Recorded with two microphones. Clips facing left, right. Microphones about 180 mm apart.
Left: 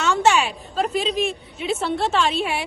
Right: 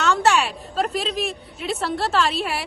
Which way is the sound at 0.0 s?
Centre (ahead or behind).